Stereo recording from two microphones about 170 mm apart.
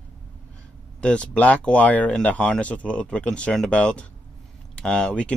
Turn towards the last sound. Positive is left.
turn(degrees=5)  # may be behind; listen again after turning